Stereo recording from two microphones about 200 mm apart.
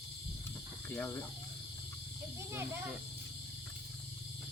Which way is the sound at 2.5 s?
10° right (ahead or behind).